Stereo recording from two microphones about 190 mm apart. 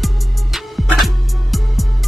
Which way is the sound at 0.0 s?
Centre (ahead or behind).